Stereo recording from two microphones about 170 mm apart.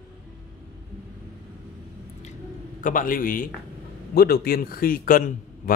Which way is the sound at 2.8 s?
50° left (ahead or behind).